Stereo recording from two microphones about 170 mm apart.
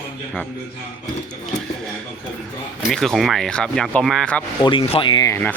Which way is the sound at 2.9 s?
Centre (ahead or behind).